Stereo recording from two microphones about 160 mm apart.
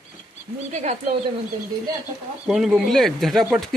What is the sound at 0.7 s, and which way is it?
Speech, 45° right (ahead or behind).